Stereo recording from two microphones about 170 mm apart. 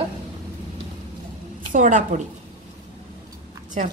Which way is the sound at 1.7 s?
50° right (ahead or behind).